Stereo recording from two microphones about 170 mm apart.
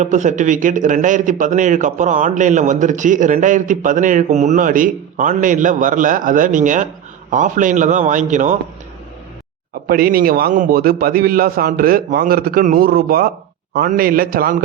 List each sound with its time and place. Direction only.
0.0 s speech: 45° right (ahead or behind)
9.9 s a man's voice: 60° right (ahead or behind)